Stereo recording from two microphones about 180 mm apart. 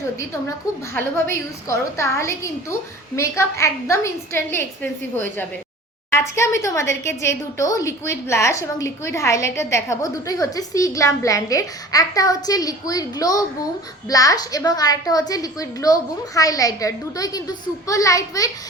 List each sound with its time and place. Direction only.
1.6 s a woman's voice: 15° left (ahead or behind)